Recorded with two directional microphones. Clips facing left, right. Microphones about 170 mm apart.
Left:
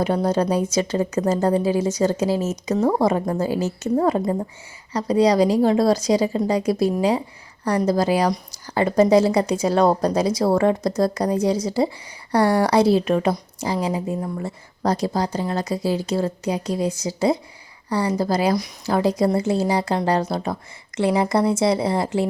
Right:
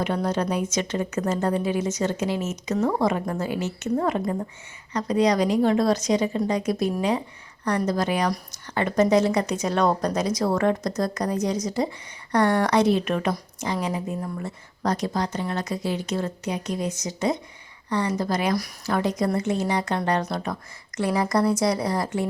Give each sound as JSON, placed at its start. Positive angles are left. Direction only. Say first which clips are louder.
{"t": 0.0, "sound": "a woman's voice", "louder": "left 5 dB", "side_deg": 35}